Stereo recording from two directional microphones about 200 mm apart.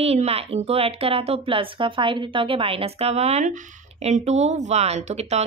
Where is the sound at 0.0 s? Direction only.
30° right (ahead or behind).